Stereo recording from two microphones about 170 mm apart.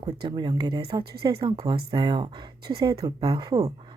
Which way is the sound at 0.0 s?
25° right (ahead or behind).